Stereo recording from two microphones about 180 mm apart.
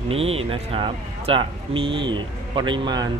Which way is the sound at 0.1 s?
35° right (ahead or behind).